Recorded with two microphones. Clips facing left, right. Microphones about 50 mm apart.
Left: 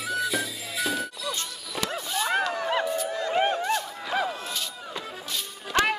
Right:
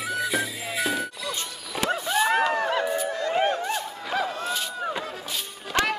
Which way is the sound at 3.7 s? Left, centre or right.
Centre.